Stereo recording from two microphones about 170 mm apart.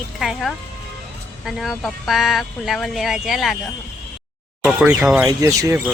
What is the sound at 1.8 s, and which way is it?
Speech, centre (ahead or behind).